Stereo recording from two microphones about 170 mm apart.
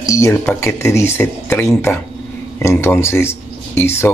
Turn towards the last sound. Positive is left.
turn(degrees=15)  # may be behind; listen again after turning